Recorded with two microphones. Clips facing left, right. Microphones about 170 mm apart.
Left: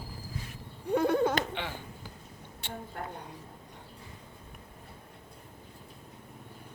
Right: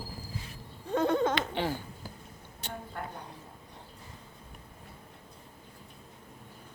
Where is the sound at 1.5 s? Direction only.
40° right (ahead or behind).